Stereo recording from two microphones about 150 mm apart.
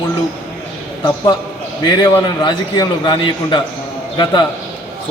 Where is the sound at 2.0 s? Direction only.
30° left (ahead or behind).